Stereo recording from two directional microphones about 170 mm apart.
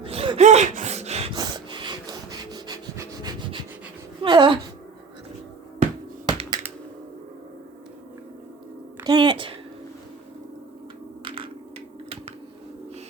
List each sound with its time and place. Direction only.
0.0 s gasp: 35° right (ahead or behind)
1.4 s wood: 25° right (ahead or behind)
4.2 s speech: 30° right (ahead or behind)
6.2 s computer keyboard: 25° right (ahead or behind)
9.0 s a sound: 25° right (ahead or behind)